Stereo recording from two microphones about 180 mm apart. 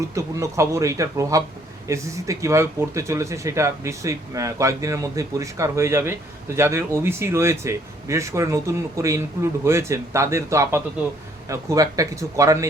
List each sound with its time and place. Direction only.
0.1 s speech: 15° right (ahead or behind)